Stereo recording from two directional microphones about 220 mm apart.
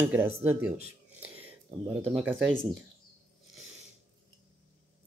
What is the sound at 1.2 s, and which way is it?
Whispering, 10° right (ahead or behind).